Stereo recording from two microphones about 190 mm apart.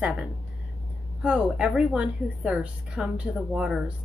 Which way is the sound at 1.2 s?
5° right (ahead or behind).